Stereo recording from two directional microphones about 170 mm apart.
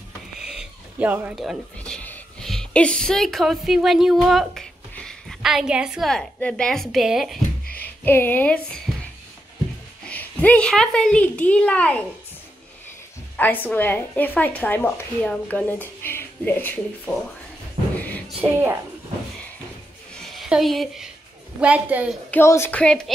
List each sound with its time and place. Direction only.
0.4 s speech: 5° right (ahead or behind)
7.6 s a sound: 60° left (ahead or behind)
8.0 s a woman's voice: 10° left (ahead or behind)
10.0 s speech: 10° left (ahead or behind)
13.4 s a woman's voice: 10° left (ahead or behind)
17.9 s a sound: 10° left (ahead or behind)
20.2 s a sound: centre (ahead or behind)
21.5 s a woman's voice: 10° right (ahead or behind)
22.3 s a woman's voice: 15° left (ahead or behind)